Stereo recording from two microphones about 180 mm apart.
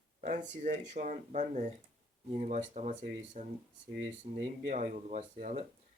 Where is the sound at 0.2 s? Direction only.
45° right (ahead or behind).